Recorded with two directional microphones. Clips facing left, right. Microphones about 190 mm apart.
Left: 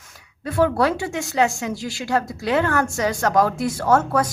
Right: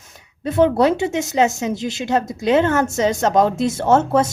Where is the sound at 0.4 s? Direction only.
20° right (ahead or behind).